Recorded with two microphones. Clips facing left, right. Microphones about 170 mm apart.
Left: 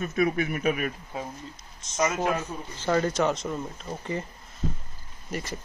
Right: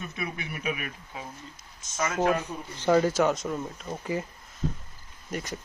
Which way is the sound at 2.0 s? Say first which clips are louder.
Even; 15° left (ahead or behind).